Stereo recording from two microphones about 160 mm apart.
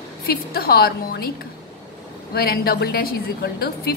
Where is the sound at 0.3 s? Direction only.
75° left (ahead or behind).